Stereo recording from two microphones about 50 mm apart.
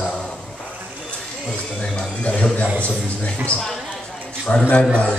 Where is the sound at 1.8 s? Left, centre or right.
Left.